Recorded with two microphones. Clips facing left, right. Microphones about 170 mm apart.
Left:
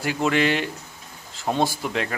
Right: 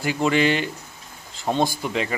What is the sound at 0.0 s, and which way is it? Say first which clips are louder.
Speech: right 1 dB; centre (ahead or behind).